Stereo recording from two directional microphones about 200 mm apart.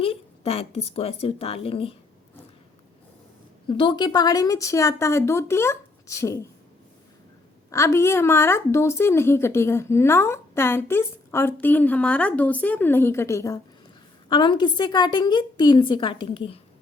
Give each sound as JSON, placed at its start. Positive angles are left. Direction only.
{"t": 0.0, "sound": "a woman's voice", "side_deg": 30}
{"t": 3.7, "sound": "a woman's voice", "side_deg": 25}
{"t": 7.7, "sound": "a woman's voice", "side_deg": 15}